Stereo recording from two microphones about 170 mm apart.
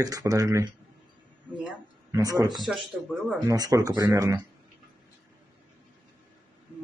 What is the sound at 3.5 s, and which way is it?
Speech, 20° right (ahead or behind).